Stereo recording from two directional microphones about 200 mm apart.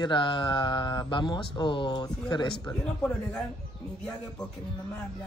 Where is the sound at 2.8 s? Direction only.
5° left (ahead or behind).